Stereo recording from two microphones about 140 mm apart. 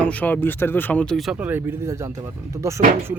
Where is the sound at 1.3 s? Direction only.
15° right (ahead or behind).